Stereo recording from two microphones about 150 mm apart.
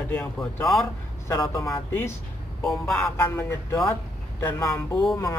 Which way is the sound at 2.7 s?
Centre (ahead or behind).